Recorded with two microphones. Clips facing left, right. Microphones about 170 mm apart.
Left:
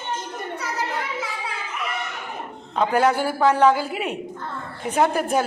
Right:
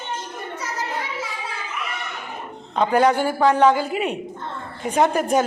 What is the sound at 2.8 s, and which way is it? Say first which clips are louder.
A man's voice: right 2 dB; 5° left (ahead or behind).